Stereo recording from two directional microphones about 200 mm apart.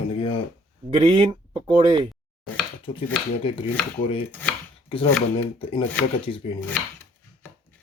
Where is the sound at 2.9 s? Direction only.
25° left (ahead or behind).